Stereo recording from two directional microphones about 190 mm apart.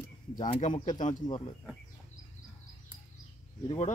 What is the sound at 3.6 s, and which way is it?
Speech, 35° left (ahead or behind).